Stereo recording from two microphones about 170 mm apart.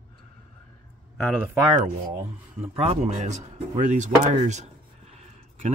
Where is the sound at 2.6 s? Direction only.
35° right (ahead or behind).